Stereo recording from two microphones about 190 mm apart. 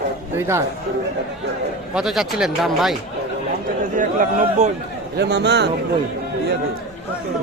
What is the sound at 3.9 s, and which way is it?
Speech, 45° right (ahead or behind).